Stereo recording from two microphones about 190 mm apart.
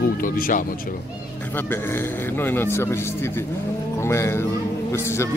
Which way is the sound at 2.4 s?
10° left (ahead or behind).